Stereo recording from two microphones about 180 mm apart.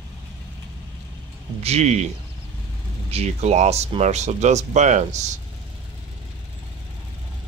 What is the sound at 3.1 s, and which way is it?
Speech, 35° right (ahead or behind).